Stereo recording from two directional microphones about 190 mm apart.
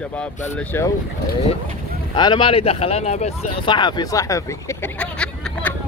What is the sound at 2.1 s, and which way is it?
Speech, 25° left (ahead or behind).